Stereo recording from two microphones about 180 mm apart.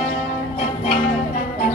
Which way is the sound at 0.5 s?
40° left (ahead or behind).